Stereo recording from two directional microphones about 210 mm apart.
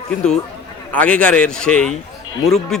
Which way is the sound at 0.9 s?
5° left (ahead or behind).